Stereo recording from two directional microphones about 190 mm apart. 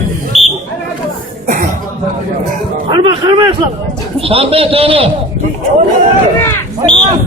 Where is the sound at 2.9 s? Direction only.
25° right (ahead or behind).